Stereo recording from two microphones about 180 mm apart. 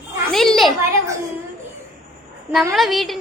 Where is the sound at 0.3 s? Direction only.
Centre (ahead or behind).